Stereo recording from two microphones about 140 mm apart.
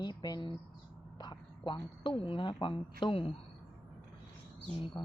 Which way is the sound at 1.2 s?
30° left (ahead or behind).